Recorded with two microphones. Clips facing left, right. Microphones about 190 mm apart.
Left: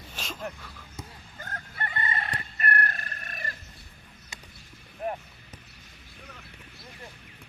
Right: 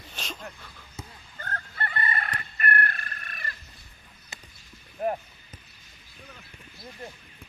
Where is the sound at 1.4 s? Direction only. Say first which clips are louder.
Right 2 dB; 10° left (ahead or behind); by 3.5 s 40° left (ahead or behind).